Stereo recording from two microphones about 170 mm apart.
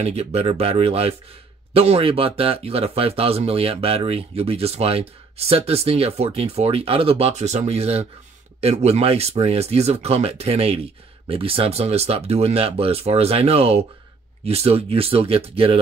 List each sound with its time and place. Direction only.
0.0 s speech: 40° right (ahead or behind)